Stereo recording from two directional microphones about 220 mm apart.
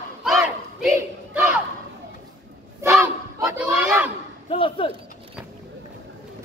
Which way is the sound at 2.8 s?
15° right (ahead or behind).